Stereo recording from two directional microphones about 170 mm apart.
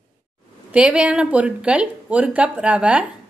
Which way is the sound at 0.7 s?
5° right (ahead or behind).